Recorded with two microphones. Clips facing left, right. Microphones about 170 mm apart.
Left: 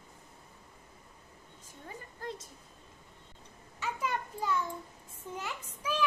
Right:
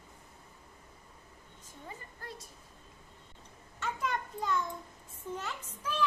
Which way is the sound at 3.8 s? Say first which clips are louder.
Even; 10° left (ahead or behind).